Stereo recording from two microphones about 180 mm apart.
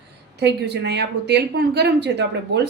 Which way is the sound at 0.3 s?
70° right (ahead or behind).